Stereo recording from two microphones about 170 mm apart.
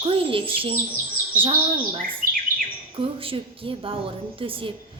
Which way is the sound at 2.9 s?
35° right (ahead or behind).